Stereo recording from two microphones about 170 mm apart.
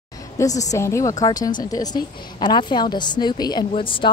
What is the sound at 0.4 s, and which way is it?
Speech, 20° left (ahead or behind).